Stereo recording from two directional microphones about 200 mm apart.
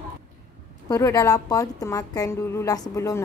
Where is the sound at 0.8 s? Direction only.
15° left (ahead or behind).